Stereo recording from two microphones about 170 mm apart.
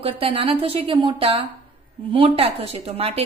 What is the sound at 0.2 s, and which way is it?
A woman's voice, 35° right (ahead or behind).